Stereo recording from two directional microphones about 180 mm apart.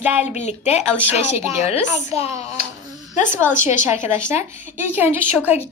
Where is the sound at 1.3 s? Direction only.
15° right (ahead or behind).